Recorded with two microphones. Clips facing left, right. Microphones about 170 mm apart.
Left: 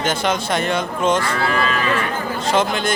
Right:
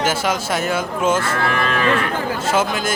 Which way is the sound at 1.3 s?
55° right (ahead or behind).